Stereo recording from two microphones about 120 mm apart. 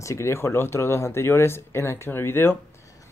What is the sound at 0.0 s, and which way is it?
Speech, 25° left (ahead or behind).